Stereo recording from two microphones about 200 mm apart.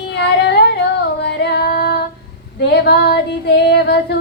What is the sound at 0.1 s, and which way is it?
Female singing, 55° left (ahead or behind).